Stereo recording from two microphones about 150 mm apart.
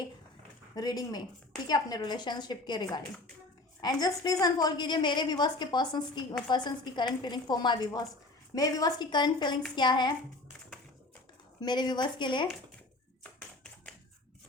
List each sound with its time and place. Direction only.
0.8 s a woman's voice: 25° left (ahead or behind)
11.6 s a woman's voice: 30° left (ahead or behind)